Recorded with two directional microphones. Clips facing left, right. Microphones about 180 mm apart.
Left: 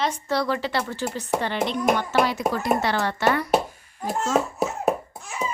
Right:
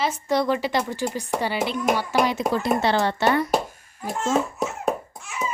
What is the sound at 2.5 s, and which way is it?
Speech, 25° right (ahead or behind).